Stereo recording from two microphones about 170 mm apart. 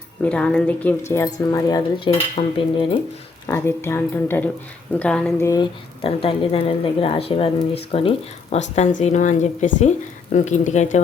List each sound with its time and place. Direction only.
0.3 s a woman's voice: 5° left (ahead or behind); by 3.0 s 30° left (ahead or behind)
3.5 s speech: 15° left (ahead or behind)
6.0 s a woman's voice: 35° left (ahead or behind)